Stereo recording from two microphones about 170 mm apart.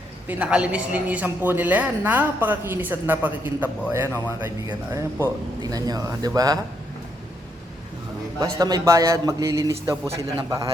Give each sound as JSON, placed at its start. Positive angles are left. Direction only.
{"t": 0.3, "sound": "a woman's voice", "side_deg": -5}
{"t": 8.4, "sound": "a man's voice", "side_deg": -20}